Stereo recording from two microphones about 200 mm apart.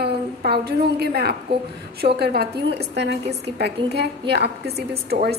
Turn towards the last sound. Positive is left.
turn(degrees=-50)  # may be behind; listen again after turning